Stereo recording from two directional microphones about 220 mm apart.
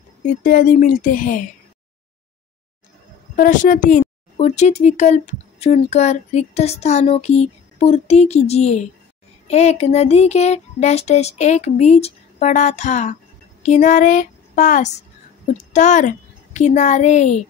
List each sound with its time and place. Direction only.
0.3 s speech: 35° left (ahead or behind)
3.3 s a woman's voice: 35° left (ahead or behind)